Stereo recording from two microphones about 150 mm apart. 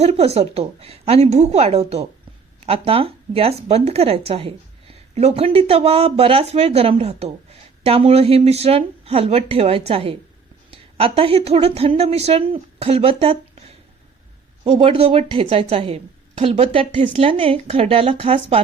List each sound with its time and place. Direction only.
0.0 s a woman's voice: 45° right (ahead or behind)